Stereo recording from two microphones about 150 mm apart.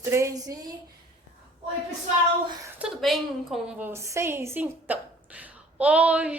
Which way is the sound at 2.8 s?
Centre (ahead or behind).